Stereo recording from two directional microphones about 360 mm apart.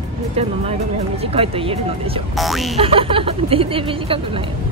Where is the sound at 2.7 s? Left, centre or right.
Centre.